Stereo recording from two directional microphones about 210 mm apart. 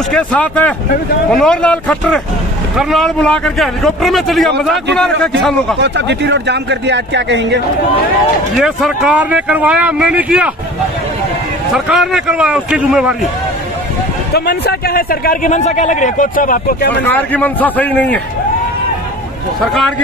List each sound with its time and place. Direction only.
0.1 s a man's voice: 5° left (ahead or behind)
5.8 s speech: 55° right (ahead or behind)
8.5 s a man's voice: 5° right (ahead or behind)
11.7 s a man's voice: centre (ahead or behind)
14.3 s a man's voice: 50° left (ahead or behind)
17.0 s a man's voice: 10° left (ahead or behind)
19.6 s a man's voice: centre (ahead or behind)